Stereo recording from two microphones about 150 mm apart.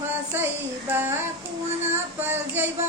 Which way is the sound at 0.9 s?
15° right (ahead or behind).